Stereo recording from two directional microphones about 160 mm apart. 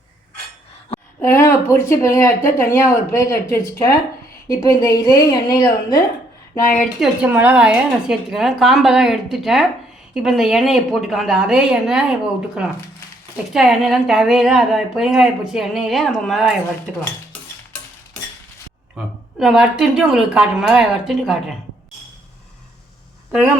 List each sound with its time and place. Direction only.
1.2 s a woman's voice: 15° left (ahead or behind)
6.8 s speech: 5° right (ahead or behind)
18.9 s speech: centre (ahead or behind)